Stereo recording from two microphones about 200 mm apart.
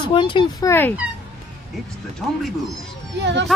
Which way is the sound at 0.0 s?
25° left (ahead or behind).